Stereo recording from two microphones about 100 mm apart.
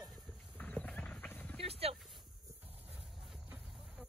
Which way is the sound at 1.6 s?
85° right.